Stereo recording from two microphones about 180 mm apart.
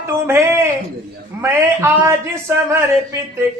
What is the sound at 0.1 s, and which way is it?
Speech, 15° right (ahead or behind).